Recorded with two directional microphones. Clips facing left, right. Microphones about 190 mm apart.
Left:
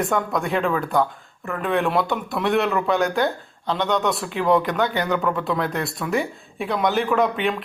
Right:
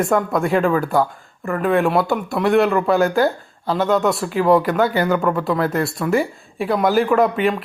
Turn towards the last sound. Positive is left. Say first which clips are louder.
# right 4 dB
turn(degrees=0)  # may be behind; listen again after turning